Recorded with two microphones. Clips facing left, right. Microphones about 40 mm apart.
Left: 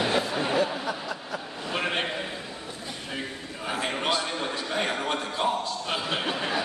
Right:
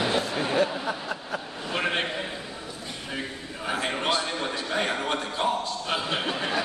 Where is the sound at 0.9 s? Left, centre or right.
Right.